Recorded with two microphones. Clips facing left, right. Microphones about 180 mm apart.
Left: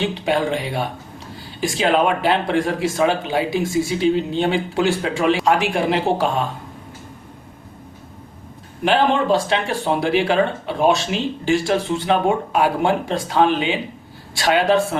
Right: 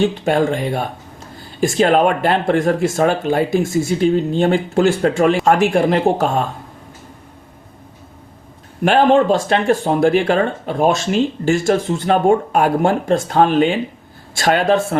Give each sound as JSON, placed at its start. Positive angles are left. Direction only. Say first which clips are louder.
{"t": 0.0, "sound": "speech", "louder": "right 4 dB", "side_deg": -50}
{"t": 8.8, "sound": "speech", "louder": "right 5 dB", "side_deg": -50}